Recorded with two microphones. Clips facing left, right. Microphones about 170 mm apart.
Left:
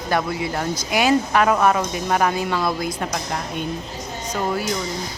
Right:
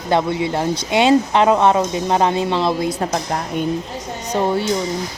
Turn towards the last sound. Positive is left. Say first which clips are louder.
# right 5 dB
turn(degrees=-30)  # may be behind; listen again after turning